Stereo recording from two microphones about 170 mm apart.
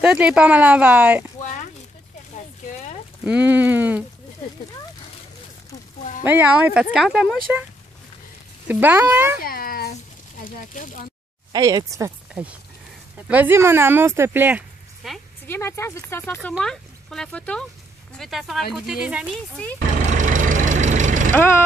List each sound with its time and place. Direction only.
0.0 s speech: 5° right (ahead or behind)
1.4 s a sound: 45° left (ahead or behind)
3.3 s speech: 10° right (ahead or behind)
6.2 s speech: 10° right (ahead or behind)
8.6 s speech: 10° right (ahead or behind)
9.4 s a sound: 60° left (ahead or behind)
10.4 s speech: 50° left (ahead or behind)
11.5 s speech: 20° right (ahead or behind)
15.0 s speech: centre (ahead or behind)
15.4 s speech: 15° left (ahead or behind)
16.3 s speech: centre (ahead or behind)
20.1 s vehicle: 50° right (ahead or behind)
21.3 s speech: 10° left (ahead or behind)